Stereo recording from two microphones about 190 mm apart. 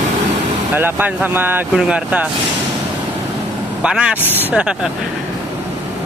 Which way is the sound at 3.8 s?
5° right (ahead or behind).